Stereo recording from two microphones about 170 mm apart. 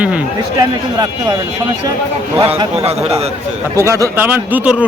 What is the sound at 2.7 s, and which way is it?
Speech, 40° right (ahead or behind).